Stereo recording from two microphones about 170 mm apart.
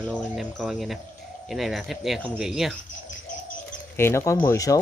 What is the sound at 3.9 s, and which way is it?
Speech, 15° left (ahead or behind).